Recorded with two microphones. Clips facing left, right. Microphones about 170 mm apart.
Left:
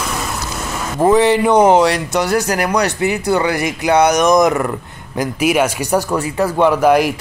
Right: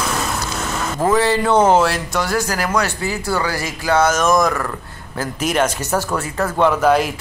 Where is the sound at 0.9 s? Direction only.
20° left (ahead or behind).